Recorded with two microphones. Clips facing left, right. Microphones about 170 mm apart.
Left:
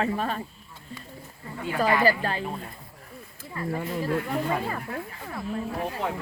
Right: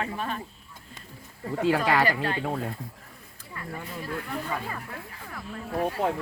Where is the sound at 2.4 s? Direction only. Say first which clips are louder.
Right 4 dB; 90° right.